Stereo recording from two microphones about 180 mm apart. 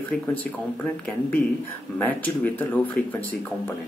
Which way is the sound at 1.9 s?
10° left (ahead or behind).